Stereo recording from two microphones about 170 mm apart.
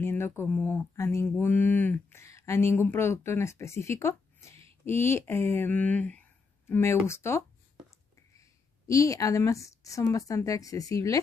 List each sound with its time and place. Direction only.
0.0 s mantra: 15° left (ahead or behind)
8.4 s a woman's voice: 20° left (ahead or behind)